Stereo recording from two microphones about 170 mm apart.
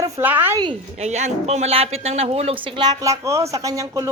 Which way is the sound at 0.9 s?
40° right (ahead or behind).